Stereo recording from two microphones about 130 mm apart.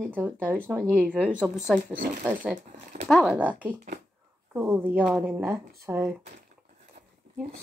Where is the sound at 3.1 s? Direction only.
Centre (ahead or behind); by 6.2 s 15° right (ahead or behind).